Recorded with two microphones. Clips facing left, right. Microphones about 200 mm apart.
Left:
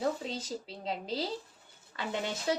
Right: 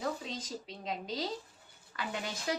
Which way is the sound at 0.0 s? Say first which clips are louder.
Left 4 dB; 30° left (ahead or behind).